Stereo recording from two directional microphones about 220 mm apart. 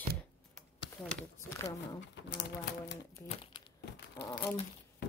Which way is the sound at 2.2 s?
55° left (ahead or behind).